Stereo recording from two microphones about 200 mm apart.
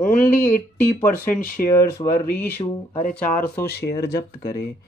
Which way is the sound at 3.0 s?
45° left (ahead or behind).